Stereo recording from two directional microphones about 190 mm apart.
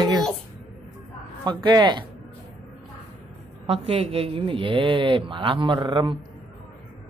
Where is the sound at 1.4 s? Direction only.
25° right (ahead or behind).